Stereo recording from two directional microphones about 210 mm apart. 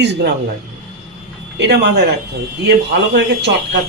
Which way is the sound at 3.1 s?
55° right (ahead or behind).